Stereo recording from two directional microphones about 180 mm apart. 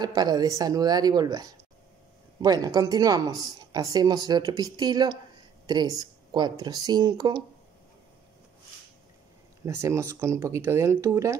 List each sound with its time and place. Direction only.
0.0 s speech: 20° right (ahead or behind)
9.7 s speech: 15° right (ahead or behind)